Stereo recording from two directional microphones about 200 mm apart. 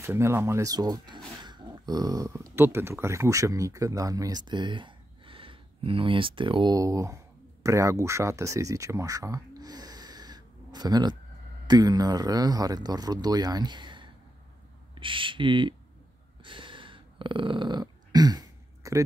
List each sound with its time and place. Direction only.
0.0 s a man's voice: 10° right (ahead or behind)
16.4 s dog: 25° right (ahead or behind)